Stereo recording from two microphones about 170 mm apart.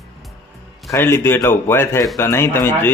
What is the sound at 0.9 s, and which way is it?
Speech, 15° left (ahead or behind).